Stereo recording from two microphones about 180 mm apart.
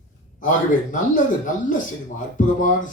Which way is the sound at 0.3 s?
45° left (ahead or behind).